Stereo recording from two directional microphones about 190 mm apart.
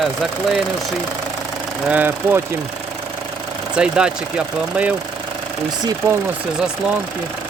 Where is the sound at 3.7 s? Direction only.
5° right (ahead or behind).